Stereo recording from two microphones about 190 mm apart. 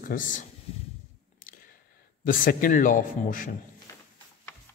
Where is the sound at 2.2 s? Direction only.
45° left (ahead or behind).